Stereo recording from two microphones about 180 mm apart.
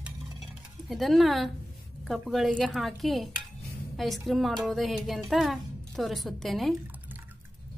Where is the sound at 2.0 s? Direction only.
Centre (ahead or behind).